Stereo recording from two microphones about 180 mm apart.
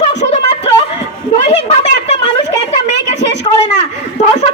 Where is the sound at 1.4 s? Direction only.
40° left (ahead or behind).